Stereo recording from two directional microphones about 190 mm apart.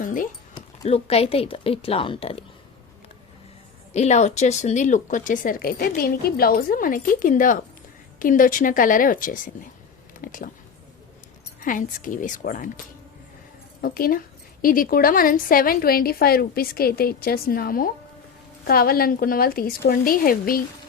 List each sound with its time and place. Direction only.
0.0 s a sound: 45° left (ahead or behind)
0.9 s a woman's voice: 30° left (ahead or behind)
3.9 s speech: 35° left (ahead or behind)
11.6 s speech: 45° left (ahead or behind)
13.8 s speech: 50° left (ahead or behind)